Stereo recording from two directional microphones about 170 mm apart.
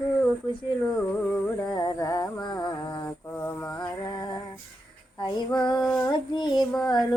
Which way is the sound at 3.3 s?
10° left (ahead or behind).